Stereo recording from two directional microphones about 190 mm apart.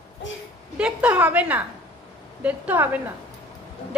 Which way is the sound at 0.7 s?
5° right (ahead or behind).